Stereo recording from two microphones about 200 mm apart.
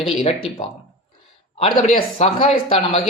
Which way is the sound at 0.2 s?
40° left (ahead or behind).